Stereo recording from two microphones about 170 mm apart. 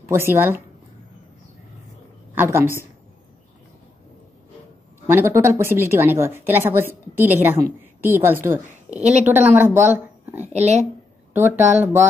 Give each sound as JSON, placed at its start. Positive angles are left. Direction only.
{"t": 0.1, "sound": "a woman's voice", "side_deg": -15}
{"t": 2.3, "sound": "a woman's voice", "side_deg": -15}
{"t": 5.0, "sound": "a woman's voice", "side_deg": -15}
{"t": 10.5, "sound": "speech", "side_deg": -40}
{"t": 11.3, "sound": "a woman's voice", "side_deg": -15}